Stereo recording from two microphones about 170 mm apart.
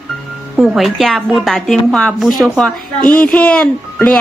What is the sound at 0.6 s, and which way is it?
Speech, centre (ahead or behind).